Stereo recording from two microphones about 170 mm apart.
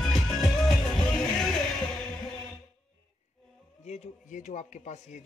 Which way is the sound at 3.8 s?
40° left (ahead or behind).